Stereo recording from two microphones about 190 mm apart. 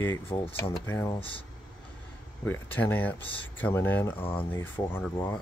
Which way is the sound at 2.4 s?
10° left (ahead or behind).